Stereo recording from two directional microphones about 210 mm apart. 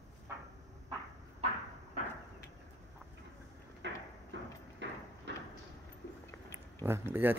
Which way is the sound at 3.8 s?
60° right (ahead or behind).